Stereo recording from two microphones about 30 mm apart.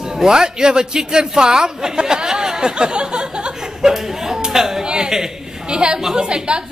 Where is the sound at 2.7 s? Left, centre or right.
Right.